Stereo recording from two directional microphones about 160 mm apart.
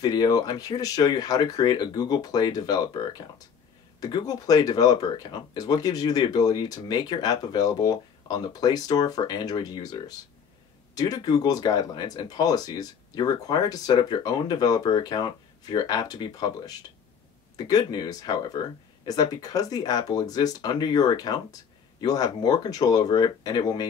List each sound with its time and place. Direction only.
0.0 s speech: 25° left (ahead or behind)